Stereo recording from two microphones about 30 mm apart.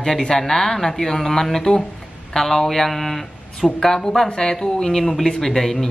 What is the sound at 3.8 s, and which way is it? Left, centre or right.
Speech, centre.